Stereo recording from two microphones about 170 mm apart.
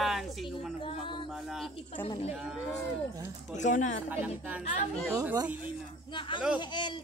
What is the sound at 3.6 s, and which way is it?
Speech, 45° left (ahead or behind).